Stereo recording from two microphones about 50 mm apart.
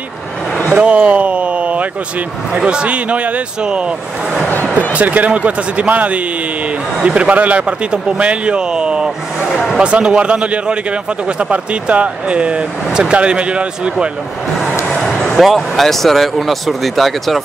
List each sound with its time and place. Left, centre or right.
0.7 s a sound: right
2.5 s speech: right
4.9 s speech: right
9.5 s speech: centre
9.8 s speech: centre
15.3 s speech: centre